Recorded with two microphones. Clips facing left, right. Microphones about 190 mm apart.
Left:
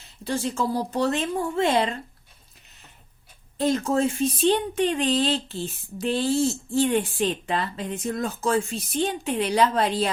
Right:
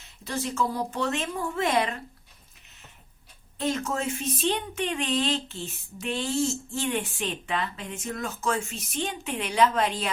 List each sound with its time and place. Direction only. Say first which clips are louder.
0.3 s speech: left 3 dB; 30° left (ahead or behind)
3.6 s speech: left 6 dB; 35° left (ahead or behind)